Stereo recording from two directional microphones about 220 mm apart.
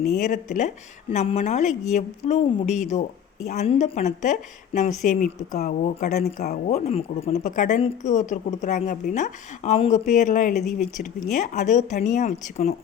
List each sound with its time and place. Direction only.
0.1 s speech: 35° left (ahead or behind)